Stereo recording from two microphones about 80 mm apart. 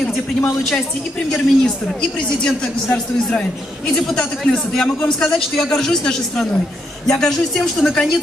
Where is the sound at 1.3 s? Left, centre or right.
Centre.